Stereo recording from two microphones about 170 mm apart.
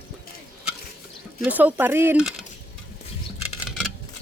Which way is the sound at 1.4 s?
10° right (ahead or behind).